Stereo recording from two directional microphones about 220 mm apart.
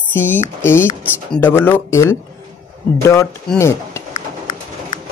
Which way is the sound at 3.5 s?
10° left (ahead or behind).